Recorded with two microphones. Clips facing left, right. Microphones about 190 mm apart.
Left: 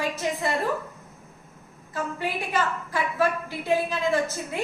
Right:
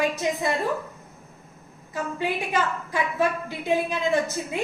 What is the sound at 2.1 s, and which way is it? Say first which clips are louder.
A woman's voice: right 2 dB; 15° right (ahead or behind).